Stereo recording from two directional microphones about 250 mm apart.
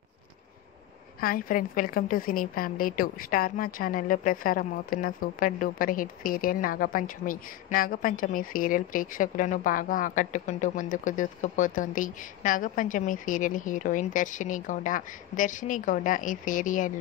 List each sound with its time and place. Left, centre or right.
1.2 s a woman's voice: left